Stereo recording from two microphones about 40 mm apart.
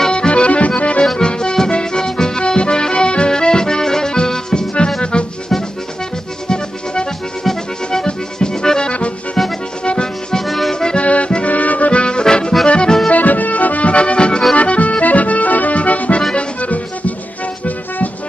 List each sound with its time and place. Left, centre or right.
0.1 s accordion: left
1.0 s accordion: centre
5.1 s music: left
7.4 s accordion: centre
9.8 s music: left
10.4 s accordion: centre
10.7 s accordion: centre
11.0 s accordion: left
11.4 s accordion: left
11.9 s accordion: left
13.1 s accordion: left
16.3 s music: left